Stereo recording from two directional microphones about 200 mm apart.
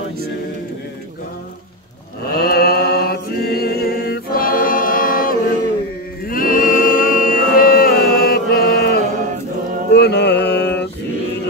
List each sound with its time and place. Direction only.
2.3 s chant: 50° left (ahead or behind)
6.2 s choir: 45° left (ahead or behind)
9.9 s mantra: 55° left (ahead or behind)